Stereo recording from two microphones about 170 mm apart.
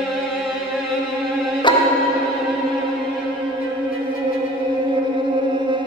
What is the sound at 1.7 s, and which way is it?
Music, 25° left (ahead or behind).